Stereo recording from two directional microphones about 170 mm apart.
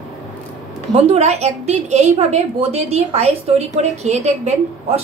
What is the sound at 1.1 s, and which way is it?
A woman's voice, 40° right (ahead or behind).